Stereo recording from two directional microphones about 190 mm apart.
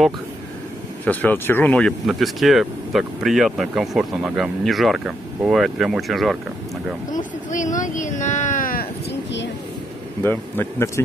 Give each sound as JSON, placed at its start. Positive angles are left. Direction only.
{"t": 1.0, "sound": "speech", "side_deg": 10}
{"t": 7.1, "sound": "speech", "side_deg": 40}
{"t": 10.2, "sound": "a man's voice", "side_deg": 10}